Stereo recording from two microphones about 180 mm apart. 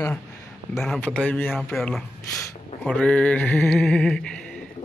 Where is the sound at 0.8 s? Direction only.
5° left (ahead or behind).